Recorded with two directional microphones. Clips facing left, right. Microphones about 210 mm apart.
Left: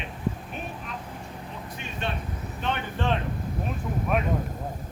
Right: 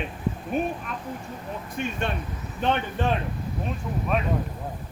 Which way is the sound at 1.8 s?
50° right (ahead or behind).